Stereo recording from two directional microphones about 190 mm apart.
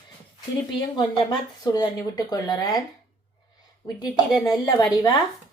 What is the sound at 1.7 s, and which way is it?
A woman's voice, 20° left (ahead or behind).